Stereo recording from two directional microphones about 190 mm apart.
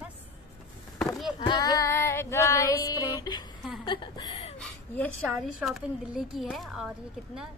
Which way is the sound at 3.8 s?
25° left (ahead or behind).